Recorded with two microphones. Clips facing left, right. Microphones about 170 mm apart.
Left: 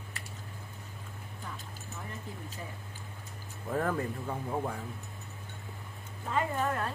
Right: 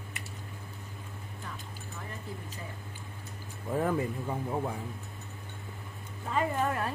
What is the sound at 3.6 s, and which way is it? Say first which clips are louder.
Speech: right 2 dB; 10° right (ahead or behind).